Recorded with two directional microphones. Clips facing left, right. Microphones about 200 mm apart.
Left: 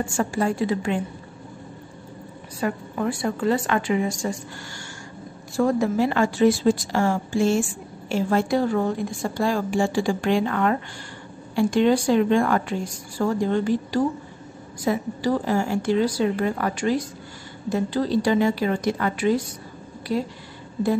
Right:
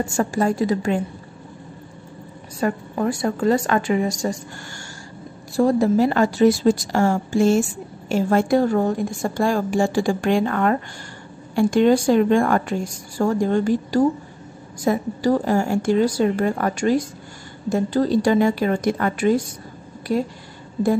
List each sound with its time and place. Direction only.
0.0 s a woman's voice: 40° right (ahead or behind)
2.6 s a woman's voice: 45° right (ahead or behind)
5.6 s a woman's voice: 35° right (ahead or behind)